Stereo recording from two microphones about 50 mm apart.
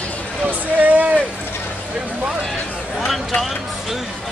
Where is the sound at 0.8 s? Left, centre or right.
Right.